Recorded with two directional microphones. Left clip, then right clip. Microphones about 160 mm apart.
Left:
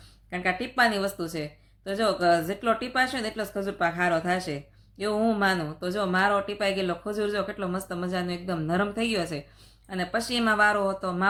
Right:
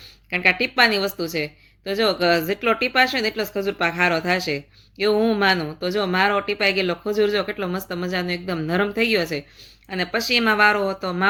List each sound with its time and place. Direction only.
0.3 s speech: 15° right (ahead or behind)